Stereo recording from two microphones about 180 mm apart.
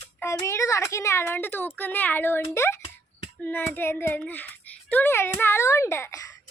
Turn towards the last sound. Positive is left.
turn(degrees=15)  # may be behind; listen again after turning